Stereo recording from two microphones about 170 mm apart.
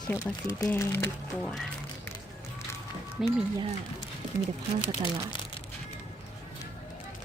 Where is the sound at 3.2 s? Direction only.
5° right (ahead or behind).